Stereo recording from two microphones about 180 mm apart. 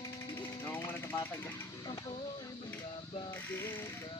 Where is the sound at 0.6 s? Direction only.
10° left (ahead or behind).